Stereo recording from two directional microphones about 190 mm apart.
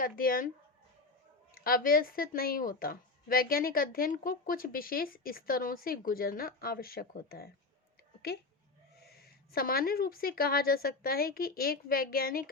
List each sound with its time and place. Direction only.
0.0 s a woman's voice: 50° left (ahead or behind)
1.5 s a woman's voice: 50° left (ahead or behind)
9.0 s a woman's voice: 55° left (ahead or behind)